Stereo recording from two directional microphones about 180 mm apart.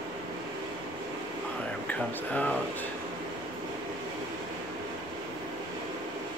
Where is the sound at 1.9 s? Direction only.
10° left (ahead or behind).